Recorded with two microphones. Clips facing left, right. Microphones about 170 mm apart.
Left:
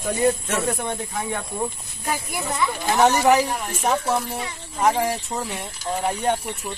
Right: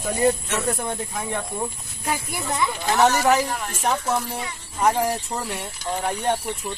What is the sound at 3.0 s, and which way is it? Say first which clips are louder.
Speech: left 2 dB; 15° left (ahead or behind).